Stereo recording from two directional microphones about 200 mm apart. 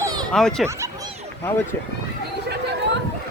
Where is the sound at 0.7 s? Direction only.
15° right (ahead or behind).